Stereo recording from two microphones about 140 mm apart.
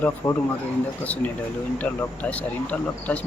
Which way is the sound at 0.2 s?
25° left (ahead or behind).